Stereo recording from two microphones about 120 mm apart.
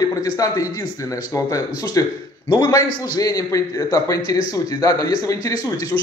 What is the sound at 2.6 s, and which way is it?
A man's voice, 25° left (ahead or behind).